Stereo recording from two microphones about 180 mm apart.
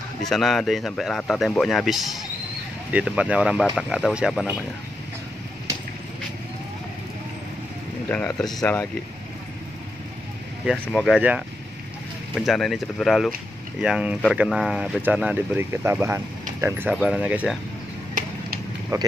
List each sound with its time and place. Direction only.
0.2 s speech: centre (ahead or behind)
8.4 s speech: centre (ahead or behind)
10.6 s speech: centre (ahead or behind)
18.2 s a sound: 50° right (ahead or behind)
18.9 s speech: 20° right (ahead or behind)